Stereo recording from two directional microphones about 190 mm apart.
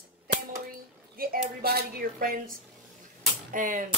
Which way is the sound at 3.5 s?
45° right (ahead or behind).